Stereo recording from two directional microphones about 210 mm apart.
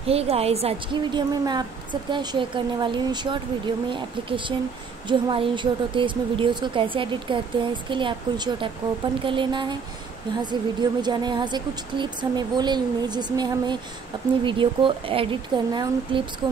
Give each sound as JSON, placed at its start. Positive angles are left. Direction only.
{"t": 0.0, "sound": "a woman's voice", "side_deg": -30}
{"t": 1.4, "sound": "a woman's voice", "side_deg": -20}